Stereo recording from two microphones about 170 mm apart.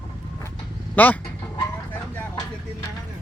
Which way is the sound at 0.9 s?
10° left (ahead or behind).